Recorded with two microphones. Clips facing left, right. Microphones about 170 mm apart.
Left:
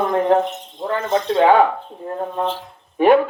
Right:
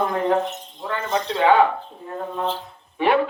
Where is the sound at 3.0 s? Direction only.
45° left (ahead or behind).